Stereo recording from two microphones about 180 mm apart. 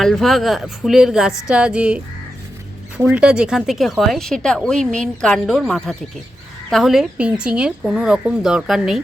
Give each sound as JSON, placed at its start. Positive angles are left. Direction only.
{"t": 0.0, "sound": "speech", "side_deg": 0}
{"t": 3.0, "sound": "speech", "side_deg": -5}